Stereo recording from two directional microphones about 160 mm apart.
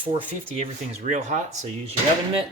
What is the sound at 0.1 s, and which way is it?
Speech, 40° right (ahead or behind).